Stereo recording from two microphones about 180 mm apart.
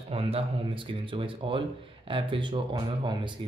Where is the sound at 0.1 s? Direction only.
30° right (ahead or behind).